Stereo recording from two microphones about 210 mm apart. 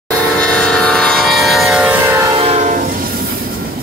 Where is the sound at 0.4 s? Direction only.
5° left (ahead or behind); by 2.3 s 15° right (ahead or behind).